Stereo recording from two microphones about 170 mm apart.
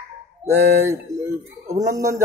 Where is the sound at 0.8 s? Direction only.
15° right (ahead or behind).